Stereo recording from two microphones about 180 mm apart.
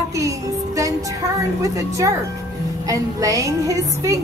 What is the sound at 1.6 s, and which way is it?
A woman's voice, 20° right (ahead or behind).